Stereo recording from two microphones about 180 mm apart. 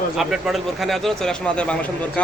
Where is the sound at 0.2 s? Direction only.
Centre (ahead or behind).